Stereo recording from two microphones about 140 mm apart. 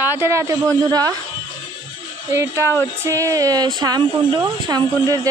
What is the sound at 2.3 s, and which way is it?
Speech, 20° right (ahead or behind).